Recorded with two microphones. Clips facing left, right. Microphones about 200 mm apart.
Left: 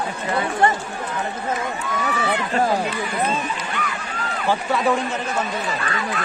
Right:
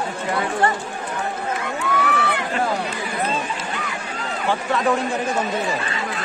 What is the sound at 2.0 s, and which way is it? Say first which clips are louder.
Run: even; 65° right (ahead or behind).